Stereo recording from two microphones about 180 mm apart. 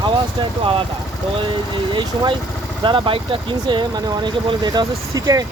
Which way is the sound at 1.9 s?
25° right (ahead or behind).